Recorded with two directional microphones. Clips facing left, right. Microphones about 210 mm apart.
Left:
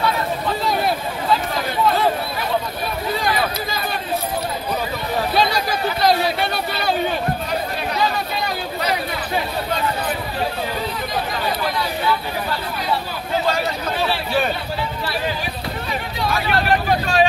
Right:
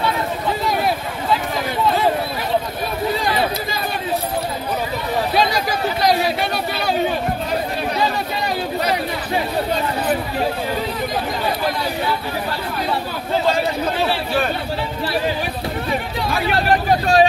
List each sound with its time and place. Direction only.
16.6 s speech: 40° right (ahead or behind)